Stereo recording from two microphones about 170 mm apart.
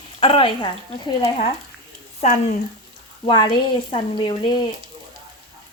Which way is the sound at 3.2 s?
30° left (ahead or behind).